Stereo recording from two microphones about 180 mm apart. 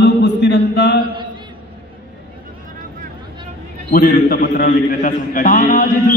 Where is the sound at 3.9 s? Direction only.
55° left (ahead or behind).